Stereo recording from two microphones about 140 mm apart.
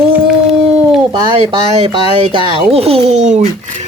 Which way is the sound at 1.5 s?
35° right (ahead or behind).